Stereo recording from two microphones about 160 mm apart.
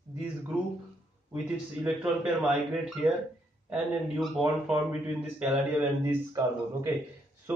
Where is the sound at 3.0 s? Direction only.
10° right (ahead or behind).